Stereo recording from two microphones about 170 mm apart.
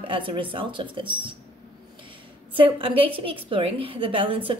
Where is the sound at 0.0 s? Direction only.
30° right (ahead or behind).